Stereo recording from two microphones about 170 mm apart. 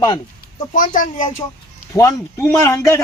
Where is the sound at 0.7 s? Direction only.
50° left (ahead or behind).